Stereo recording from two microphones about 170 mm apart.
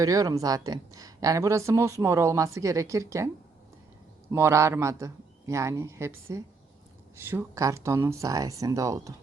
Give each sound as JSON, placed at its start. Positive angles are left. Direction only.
{"t": 0.0, "sound": "speech", "side_deg": -20}
{"t": 4.3, "sound": "a man's voice", "side_deg": -15}